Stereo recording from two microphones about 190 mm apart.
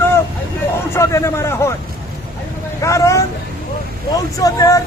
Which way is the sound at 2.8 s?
15° left (ahead or behind).